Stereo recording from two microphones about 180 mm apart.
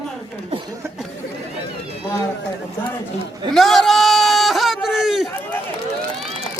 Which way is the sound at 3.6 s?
Centre (ahead or behind).